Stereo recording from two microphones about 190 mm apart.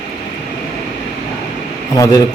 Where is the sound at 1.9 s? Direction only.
20° left (ahead or behind).